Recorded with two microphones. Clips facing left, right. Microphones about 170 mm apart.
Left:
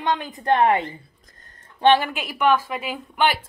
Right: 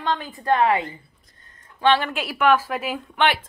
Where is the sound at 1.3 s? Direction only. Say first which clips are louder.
Left 2 dB; 40° left (ahead or behind).